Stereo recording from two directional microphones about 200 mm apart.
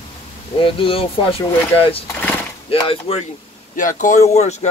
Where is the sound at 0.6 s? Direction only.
25° left (ahead or behind).